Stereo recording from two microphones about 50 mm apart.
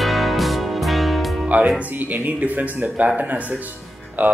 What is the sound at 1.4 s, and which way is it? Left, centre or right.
Music, right.